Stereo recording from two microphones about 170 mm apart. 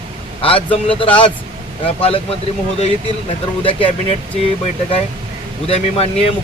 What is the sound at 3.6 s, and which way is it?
Speech, 30° left (ahead or behind).